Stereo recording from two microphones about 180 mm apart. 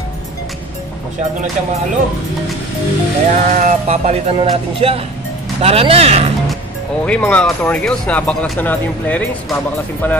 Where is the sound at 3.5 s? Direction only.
40° right (ahead or behind).